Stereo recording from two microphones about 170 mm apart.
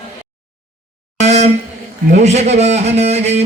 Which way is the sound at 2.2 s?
40° right (ahead or behind).